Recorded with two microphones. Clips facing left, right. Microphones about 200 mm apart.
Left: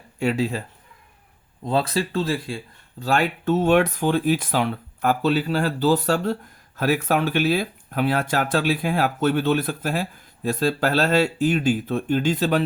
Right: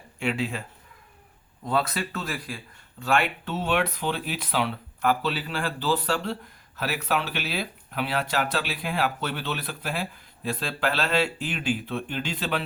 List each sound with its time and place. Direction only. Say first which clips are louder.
0.2 s speech: left 6 dB; 40° left (ahead or behind)
1.6 s speech: left 4 dB; 30° left (ahead or behind)
3.0 s speech: left 3 dB; 40° left (ahead or behind)